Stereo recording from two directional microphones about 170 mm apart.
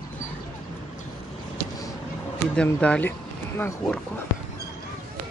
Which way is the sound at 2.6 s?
5° left (ahead or behind).